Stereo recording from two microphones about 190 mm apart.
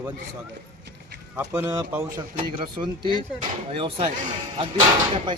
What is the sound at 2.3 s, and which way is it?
Speech, 30° right (ahead or behind).